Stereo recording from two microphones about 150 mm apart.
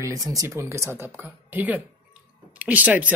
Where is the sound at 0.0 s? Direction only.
20° right (ahead or behind).